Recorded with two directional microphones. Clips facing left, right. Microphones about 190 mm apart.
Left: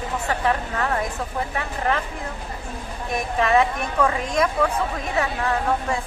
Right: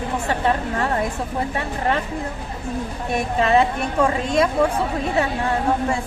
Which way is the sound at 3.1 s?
30° right (ahead or behind).